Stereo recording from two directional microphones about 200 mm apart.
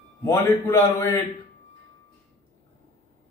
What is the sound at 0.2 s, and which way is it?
A man's voice, 10° left (ahead or behind).